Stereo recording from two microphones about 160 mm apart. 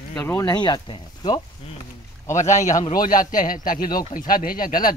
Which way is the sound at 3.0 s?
60° left (ahead or behind).